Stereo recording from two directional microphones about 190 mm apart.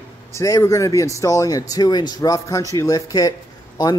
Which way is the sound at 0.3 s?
15° left (ahead or behind).